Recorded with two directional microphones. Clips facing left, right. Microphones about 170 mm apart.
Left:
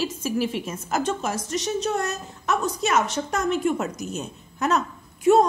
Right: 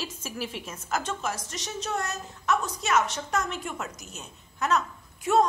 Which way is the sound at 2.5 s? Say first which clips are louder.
Left 3 dB; 25° left (ahead or behind).